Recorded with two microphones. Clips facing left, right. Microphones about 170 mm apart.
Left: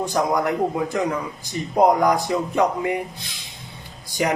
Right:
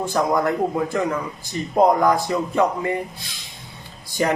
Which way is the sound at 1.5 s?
20° left (ahead or behind).